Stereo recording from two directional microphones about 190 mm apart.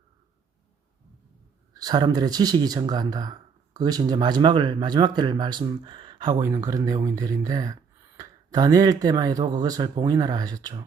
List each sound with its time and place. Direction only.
1.7 s speech: 20° right (ahead or behind)